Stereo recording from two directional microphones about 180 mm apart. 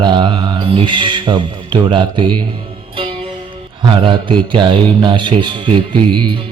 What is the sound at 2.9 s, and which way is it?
Music, 30° right (ahead or behind).